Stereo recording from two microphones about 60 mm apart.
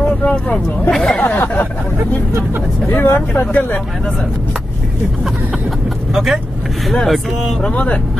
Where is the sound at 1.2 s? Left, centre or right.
Left.